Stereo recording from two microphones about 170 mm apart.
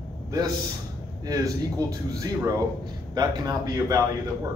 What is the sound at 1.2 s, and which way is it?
Speech, 20° right (ahead or behind).